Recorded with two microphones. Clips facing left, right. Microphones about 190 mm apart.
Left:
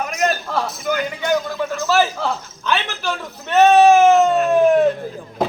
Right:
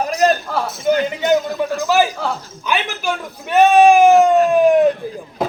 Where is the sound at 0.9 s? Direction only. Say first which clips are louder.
Right 7 dB; 25° right (ahead or behind).